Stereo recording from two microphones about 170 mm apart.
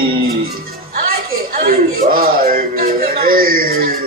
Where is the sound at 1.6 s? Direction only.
55° right (ahead or behind).